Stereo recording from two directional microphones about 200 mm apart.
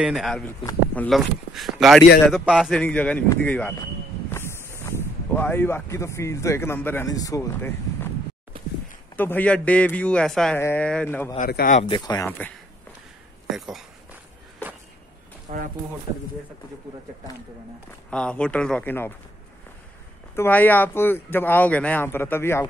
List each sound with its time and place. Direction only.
0.0 s speech: centre (ahead or behind); by 8.1 s 15° left (ahead or behind)
9.1 s speech: 10° left (ahead or behind)
11.3 s speech: 45° left (ahead or behind)
11.9 s speech: 20° left (ahead or behind)
12.3 s speech: 5° left (ahead or behind)
13.6 s speech: centre (ahead or behind)
15.5 s speech: 40° right (ahead or behind)
18.1 s speech: 5° left (ahead or behind)
20.3 s speech: 10° left (ahead or behind)